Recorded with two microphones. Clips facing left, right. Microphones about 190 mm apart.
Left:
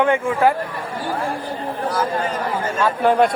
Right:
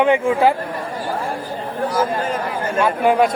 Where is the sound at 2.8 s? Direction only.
10° right (ahead or behind).